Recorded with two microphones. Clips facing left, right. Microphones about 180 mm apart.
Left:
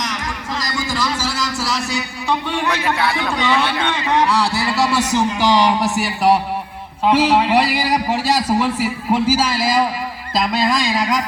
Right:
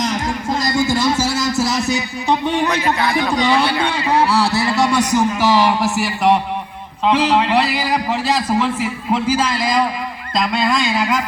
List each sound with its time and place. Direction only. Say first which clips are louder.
0.0 s a sound: right 6 dB; 25° right (ahead or behind)
1.6 s music: right 4 dB; 45° right (ahead or behind)
2.6 s a man's voice: right 2 dB; 20° right (ahead or behind); by 11.2 s centre (ahead or behind)